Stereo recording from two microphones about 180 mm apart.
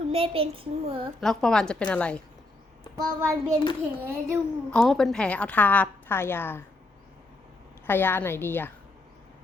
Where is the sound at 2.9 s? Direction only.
20° right (ahead or behind).